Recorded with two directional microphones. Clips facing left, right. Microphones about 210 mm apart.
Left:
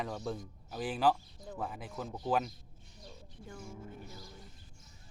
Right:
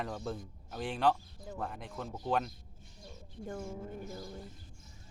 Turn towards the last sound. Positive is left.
turn(degrees=-50)  # may be behind; listen again after turning